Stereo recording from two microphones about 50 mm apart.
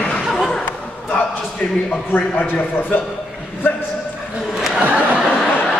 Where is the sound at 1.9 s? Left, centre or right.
Left.